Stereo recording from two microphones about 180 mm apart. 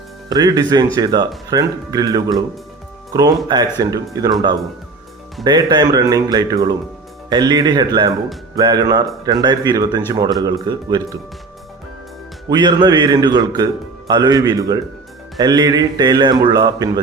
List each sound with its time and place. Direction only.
0.3 s a man's voice: 20° right (ahead or behind)
12.5 s a man's voice: 25° right (ahead or behind)